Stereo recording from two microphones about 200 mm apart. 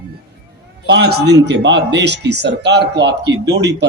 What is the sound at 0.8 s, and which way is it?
Speech, 55° right (ahead or behind).